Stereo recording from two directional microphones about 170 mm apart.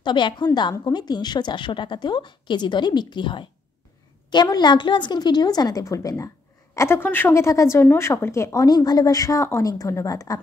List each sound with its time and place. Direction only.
0.0 s a woman's voice: 25° left (ahead or behind)